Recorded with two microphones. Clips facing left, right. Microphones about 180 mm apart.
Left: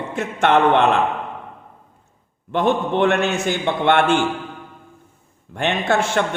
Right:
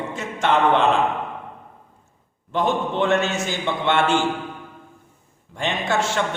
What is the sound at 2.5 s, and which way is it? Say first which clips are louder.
A man's voice: left 3 dB; 60° left (ahead or behind).